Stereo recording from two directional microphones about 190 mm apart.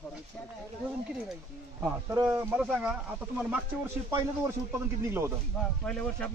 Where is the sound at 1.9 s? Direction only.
10° right (ahead or behind).